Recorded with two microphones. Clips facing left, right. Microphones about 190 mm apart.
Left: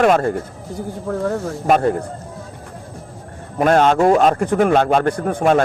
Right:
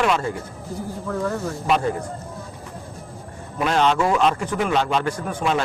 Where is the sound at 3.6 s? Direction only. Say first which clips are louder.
Left 6 dB; 50° left (ahead or behind).